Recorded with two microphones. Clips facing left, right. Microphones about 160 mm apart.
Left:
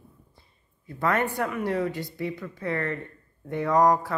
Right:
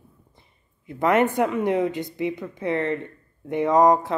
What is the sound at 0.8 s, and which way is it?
Speech, 20° right (ahead or behind).